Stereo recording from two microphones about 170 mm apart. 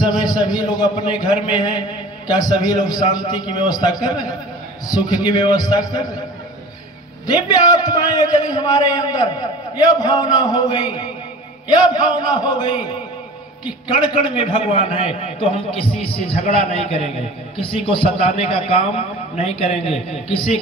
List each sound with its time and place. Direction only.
0.0 s a man's voice: 25° left (ahead or behind)
7.2 s a man's voice: 25° left (ahead or behind)
14.2 s a man's voice: 30° left (ahead or behind)
17.6 s a man's voice: 30° left (ahead or behind)